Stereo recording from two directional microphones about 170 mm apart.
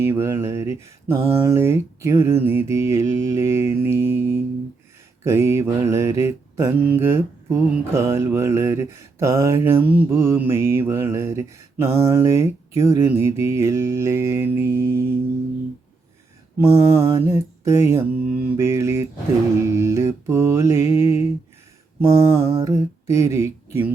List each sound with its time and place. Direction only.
0.0 s mantra: 15° right (ahead or behind)
16.7 s mantra: 15° right (ahead or behind)